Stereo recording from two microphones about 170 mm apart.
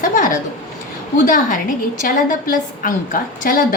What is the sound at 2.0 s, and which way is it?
A woman's voice, 55° left (ahead or behind).